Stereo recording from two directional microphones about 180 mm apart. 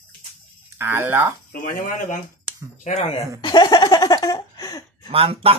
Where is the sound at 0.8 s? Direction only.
10° right (ahead or behind).